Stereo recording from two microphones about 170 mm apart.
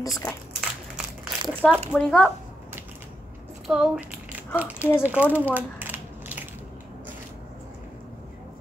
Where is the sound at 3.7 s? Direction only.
5° right (ahead or behind).